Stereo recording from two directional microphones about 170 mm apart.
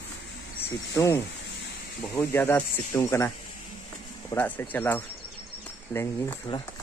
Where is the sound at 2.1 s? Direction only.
15° left (ahead or behind).